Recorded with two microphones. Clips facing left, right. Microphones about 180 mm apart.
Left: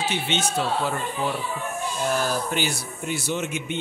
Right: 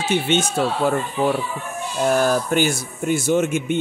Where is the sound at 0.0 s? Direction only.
50° right (ahead or behind).